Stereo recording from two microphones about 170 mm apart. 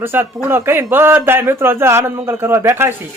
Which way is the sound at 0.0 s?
10° right (ahead or behind).